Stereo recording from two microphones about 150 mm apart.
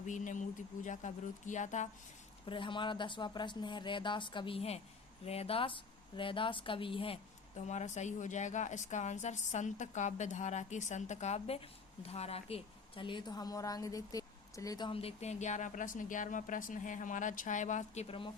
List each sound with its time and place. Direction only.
0.0 s speech: 55° left (ahead or behind)
2.5 s a woman's voice: 35° left (ahead or behind)
14.8 s speech: 40° left (ahead or behind)